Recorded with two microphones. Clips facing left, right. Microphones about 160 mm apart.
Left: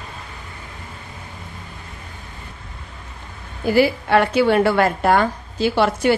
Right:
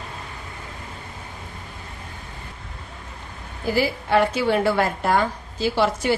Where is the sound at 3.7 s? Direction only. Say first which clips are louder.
Left 4 dB; 65° left (ahead or behind).